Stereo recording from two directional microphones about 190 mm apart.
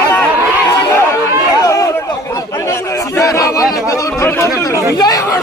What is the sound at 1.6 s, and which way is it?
Chatter, 15° left (ahead or behind).